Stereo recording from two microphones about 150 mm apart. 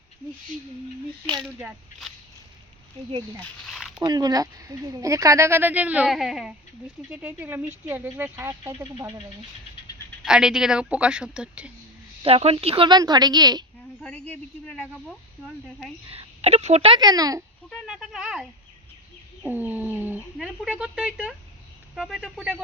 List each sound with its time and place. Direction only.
1.6 s a woman's voice: centre (ahead or behind)
3.4 s speech: centre (ahead or behind)
4.0 s a woman's voice: 25° right (ahead or behind)
8.6 s a woman's voice: 25° right (ahead or behind)
10.2 s a woman's voice: 5° right (ahead or behind)
12.2 s a woman's voice: 40° right (ahead or behind); by 13.7 s 25° right (ahead or behind)
14.0 s speech: 10° left (ahead or behind)
16.0 s a woman's voice: 45° right (ahead or behind)
17.0 s a woman's voice: 25° right (ahead or behind)
17.8 s a woman's voice: 5° right (ahead or behind)